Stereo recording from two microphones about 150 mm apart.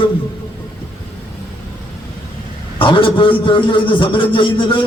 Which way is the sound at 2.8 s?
35° left (ahead or behind).